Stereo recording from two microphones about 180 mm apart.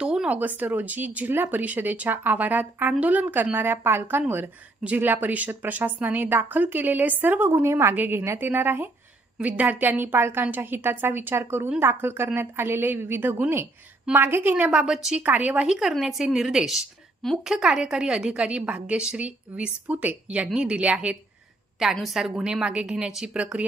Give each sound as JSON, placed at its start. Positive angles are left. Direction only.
{"t": 0.0, "sound": "a woman's voice", "side_deg": -5}